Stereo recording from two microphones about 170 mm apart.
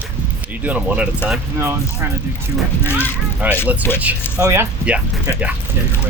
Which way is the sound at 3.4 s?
10° right (ahead or behind).